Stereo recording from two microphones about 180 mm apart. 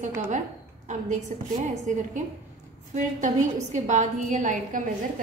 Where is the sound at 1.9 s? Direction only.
45° right (ahead or behind).